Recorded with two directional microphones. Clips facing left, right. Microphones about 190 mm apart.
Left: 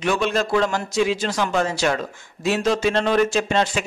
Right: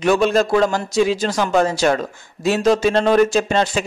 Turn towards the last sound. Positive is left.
turn(degrees=-40)  # may be behind; listen again after turning